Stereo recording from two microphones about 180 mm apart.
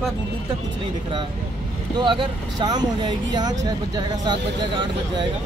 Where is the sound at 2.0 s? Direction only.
25° right (ahead or behind).